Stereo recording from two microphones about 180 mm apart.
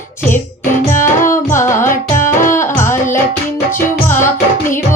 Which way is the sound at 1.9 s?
45° left (ahead or behind).